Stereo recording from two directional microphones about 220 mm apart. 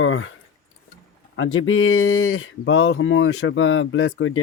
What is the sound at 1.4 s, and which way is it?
Speech, 70° left (ahead or behind).